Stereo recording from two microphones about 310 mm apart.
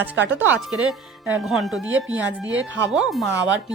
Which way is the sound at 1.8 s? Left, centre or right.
Right.